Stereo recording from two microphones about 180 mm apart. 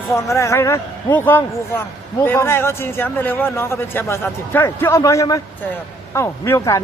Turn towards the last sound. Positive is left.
turn(degrees=15)  # may be behind; listen again after turning